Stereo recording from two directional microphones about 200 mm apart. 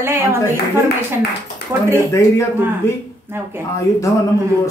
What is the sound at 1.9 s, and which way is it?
Speech, 15° left (ahead or behind).